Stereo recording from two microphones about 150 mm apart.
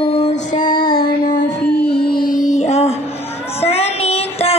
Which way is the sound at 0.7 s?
85° left.